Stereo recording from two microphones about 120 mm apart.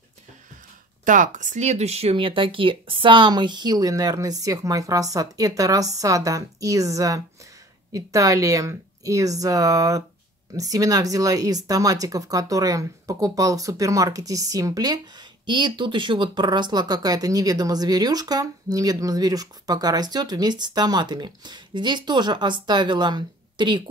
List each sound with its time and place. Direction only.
1.0 s speech: 90° right; by 23.8 s 40° right (ahead or behind)